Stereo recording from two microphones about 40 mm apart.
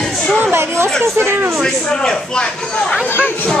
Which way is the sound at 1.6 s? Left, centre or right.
Centre.